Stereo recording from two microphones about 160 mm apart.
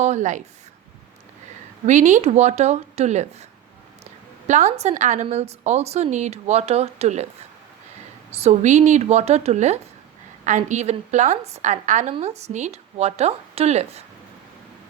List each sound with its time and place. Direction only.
0.0 s a woman's voice: 50° right (ahead or behind)
1.9 s a woman's voice: 50° right (ahead or behind)
8.3 s a woman's voice: 40° right (ahead or behind)